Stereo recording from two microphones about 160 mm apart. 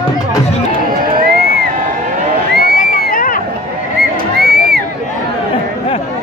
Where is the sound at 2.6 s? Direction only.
60° left (ahead or behind).